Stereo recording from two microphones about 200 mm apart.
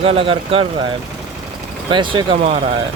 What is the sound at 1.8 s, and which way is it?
Speech, 25° right (ahead or behind).